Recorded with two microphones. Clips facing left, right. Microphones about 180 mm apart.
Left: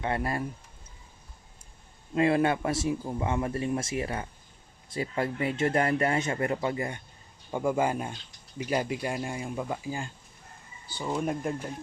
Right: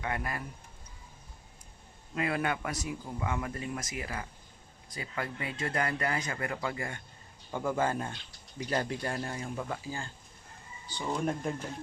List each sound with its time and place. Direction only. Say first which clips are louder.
0.0 s a man's voice: left 6 dB; 30° left (ahead or behind)
2.1 s a man's voice: left 8 dB; 30° left (ahead or behind); by 11.7 s 10° left (ahead or behind)